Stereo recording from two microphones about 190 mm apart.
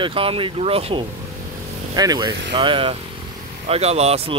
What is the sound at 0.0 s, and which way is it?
Speech, 30° right (ahead or behind).